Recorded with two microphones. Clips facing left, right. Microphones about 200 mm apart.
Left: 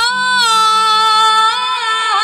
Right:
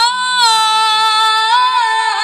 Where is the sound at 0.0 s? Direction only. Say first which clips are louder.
Right 3 dB; 45° left (ahead or behind).